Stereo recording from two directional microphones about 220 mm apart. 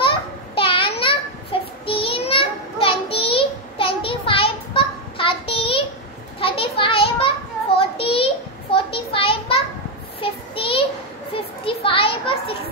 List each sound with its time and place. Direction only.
0.6 s child singing: 25° left (ahead or behind)
6.4 s a sound: 25° left (ahead or behind)
10.2 s child singing: 25° left (ahead or behind)
11.3 s children playing: 25° left (ahead or behind)